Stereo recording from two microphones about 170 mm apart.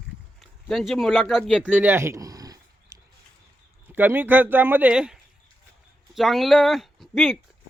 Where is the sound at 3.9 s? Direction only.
10° right (ahead or behind).